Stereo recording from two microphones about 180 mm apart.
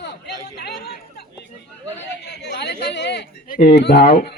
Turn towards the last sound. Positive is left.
turn(degrees=60)  # may be behind; listen again after turning